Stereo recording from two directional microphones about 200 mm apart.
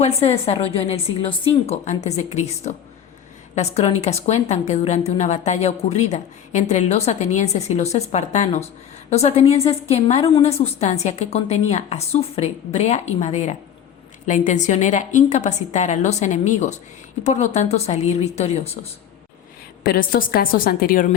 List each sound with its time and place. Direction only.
0.0 s a woman's voice: 30° left (ahead or behind)
19.8 s a woman's voice: 45° left (ahead or behind)